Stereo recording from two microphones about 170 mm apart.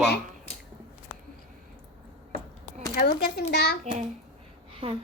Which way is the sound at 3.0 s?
65° left (ahead or behind).